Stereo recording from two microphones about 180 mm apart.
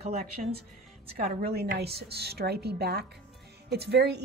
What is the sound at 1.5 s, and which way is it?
A woman's voice, 65° right (ahead or behind).